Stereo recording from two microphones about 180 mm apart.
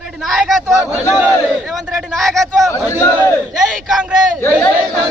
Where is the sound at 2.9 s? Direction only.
15° left (ahead or behind).